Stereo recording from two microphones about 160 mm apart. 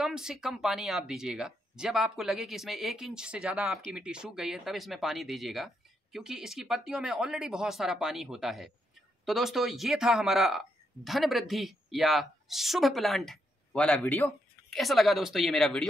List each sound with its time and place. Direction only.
0.0 s a woman's voice: 5° right (ahead or behind)
14.8 s speech: centre (ahead or behind)